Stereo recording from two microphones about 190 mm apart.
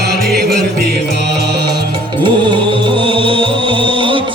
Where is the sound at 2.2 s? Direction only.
25° right (ahead or behind).